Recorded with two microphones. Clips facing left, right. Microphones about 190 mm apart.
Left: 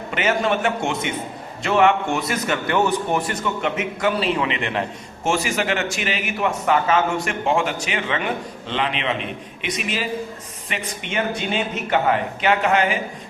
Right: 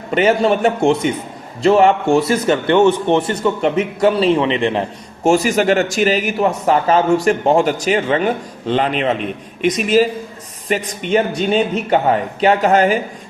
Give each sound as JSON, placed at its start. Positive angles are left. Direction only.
{"t": 0.1, "sound": "a man's voice", "side_deg": -35}